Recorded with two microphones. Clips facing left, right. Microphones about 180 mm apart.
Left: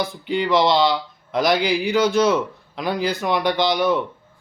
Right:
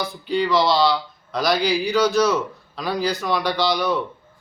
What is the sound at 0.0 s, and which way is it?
Speech, 20° left (ahead or behind).